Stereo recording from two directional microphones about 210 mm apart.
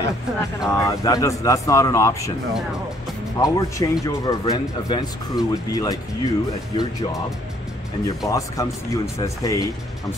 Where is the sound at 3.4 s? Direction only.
15° left (ahead or behind).